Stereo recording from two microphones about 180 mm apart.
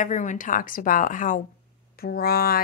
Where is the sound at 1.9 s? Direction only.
60° left (ahead or behind).